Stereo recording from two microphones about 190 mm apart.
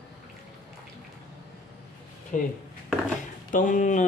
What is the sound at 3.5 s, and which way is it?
Speech, 45° left (ahead or behind).